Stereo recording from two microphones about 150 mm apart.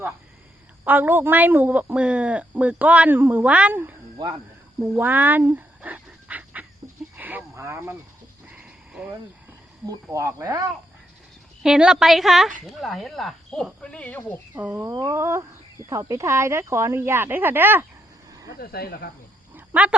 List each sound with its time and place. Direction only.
0.9 s speech: 10° right (ahead or behind)
4.8 s dog: 10° right (ahead or behind)
7.2 s a sound: 10° right (ahead or behind)
8.4 s sheep: 10° right (ahead or behind)
9.9 s speech: 20° right (ahead or behind)
11.6 s speech: 5° right (ahead or behind); by 14.4 s 15° left (ahead or behind)
14.5 s speech: 15° right (ahead or behind)
18.6 s speech: 90° left
19.5 s dog: 10° right (ahead or behind)